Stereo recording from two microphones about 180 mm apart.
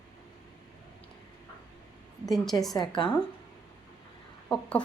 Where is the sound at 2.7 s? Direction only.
25° left (ahead or behind).